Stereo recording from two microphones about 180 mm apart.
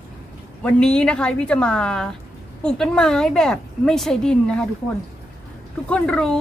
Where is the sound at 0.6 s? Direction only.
5° left (ahead or behind).